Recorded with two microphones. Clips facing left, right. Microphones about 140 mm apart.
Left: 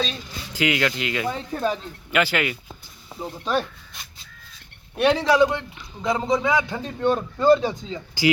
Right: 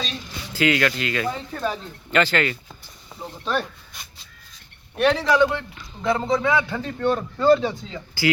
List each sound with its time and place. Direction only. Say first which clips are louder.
0.5 s speech: right 2 dB; 15° left (ahead or behind)
4.9 s speech: left 1 dB; 10° left (ahead or behind)